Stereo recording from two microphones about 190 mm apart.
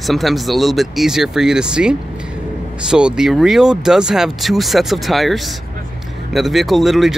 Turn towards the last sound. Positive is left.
turn(degrees=0)  # may be behind; listen again after turning